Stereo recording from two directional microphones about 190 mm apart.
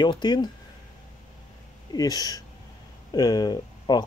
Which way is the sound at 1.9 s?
20° left (ahead or behind).